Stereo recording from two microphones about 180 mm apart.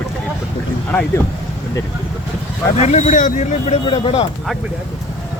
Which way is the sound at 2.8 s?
40° left (ahead or behind).